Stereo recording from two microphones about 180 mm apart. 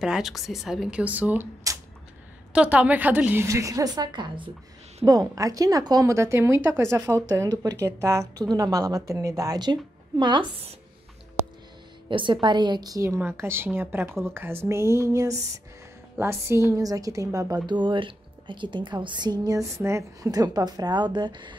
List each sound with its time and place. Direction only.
0.0 s a woman's voice: centre (ahead or behind); by 10.4 s 25° right (ahead or behind)
12.1 s a woman's voice: 25° right (ahead or behind)